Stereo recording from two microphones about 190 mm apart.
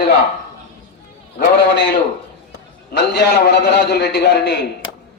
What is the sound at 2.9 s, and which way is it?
A man's voice, 60° left (ahead or behind).